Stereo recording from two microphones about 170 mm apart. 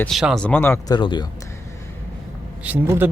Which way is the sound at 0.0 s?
Centre (ahead or behind).